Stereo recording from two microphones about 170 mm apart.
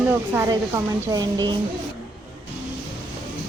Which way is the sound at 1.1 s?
25° right (ahead or behind).